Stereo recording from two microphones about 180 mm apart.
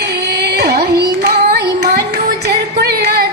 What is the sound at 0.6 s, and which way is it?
Music, 60° right (ahead or behind).